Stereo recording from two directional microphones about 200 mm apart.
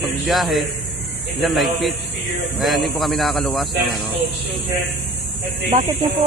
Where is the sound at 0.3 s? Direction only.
Centre (ahead or behind).